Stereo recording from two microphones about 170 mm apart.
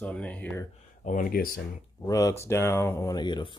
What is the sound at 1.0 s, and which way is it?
Speech, 50° left (ahead or behind).